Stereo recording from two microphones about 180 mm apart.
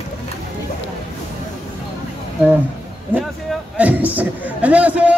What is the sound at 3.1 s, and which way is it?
A man's voice, 10° right (ahead or behind).